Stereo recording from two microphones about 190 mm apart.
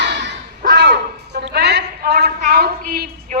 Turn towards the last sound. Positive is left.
turn(degrees=-45)  # may be behind; listen again after turning